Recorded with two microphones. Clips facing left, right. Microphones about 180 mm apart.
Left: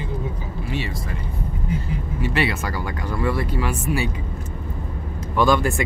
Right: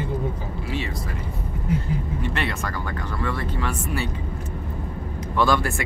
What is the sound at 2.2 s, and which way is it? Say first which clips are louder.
Speech: left 4 dB; 5° left (ahead or behind).